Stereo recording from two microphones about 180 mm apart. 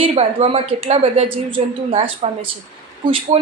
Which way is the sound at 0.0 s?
35° right (ahead or behind).